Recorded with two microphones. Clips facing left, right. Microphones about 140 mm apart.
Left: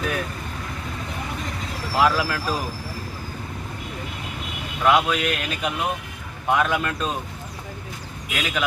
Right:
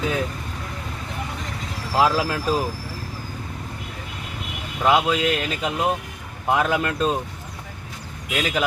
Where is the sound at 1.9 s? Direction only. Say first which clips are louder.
Right 1 dB; 25° right (ahead or behind).